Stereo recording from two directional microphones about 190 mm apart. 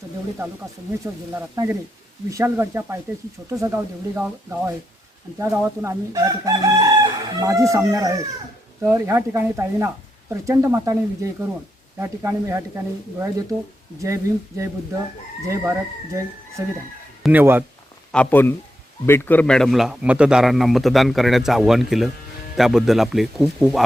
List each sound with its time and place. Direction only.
1.4 s speech: 15° right (ahead or behind)
18.1 s a man's voice: 10° left (ahead or behind)